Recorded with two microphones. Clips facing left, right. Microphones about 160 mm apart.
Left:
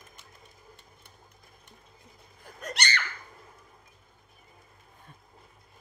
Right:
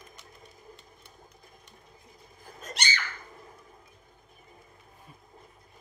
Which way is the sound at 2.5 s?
65° left (ahead or behind).